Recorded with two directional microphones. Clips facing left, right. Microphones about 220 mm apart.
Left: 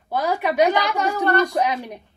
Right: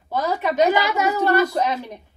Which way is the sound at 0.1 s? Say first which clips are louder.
Left 1 dB; 10° left (ahead or behind).